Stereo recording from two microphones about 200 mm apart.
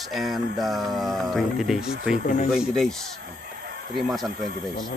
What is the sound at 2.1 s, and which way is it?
Speech, 40° left (ahead or behind).